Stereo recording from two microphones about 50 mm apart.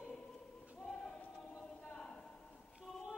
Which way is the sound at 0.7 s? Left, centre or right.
Centre.